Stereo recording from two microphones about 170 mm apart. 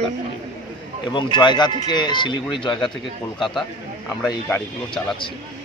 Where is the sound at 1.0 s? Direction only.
25° left (ahead or behind).